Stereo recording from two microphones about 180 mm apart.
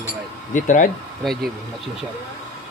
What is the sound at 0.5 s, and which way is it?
Speech, 45° left (ahead or behind).